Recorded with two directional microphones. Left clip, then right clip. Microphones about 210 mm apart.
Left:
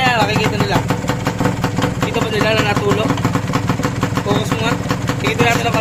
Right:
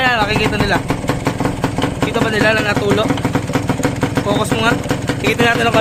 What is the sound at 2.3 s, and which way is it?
Speech, 30° right (ahead or behind).